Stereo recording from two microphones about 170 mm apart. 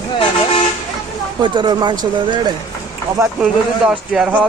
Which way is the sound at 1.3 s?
25° right (ahead or behind).